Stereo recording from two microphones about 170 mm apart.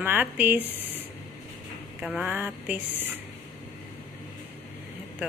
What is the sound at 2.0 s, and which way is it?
A woman's voice, 10° right (ahead or behind).